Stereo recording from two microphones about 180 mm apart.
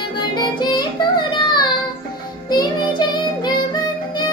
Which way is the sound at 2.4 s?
25° left (ahead or behind).